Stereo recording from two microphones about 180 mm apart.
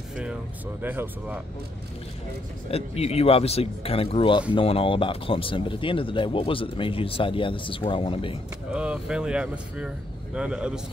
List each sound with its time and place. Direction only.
0.8 s speech: 10° right (ahead or behind)
2.7 s speech: 35° left (ahead or behind)
8.7 s speech: 5° right (ahead or behind)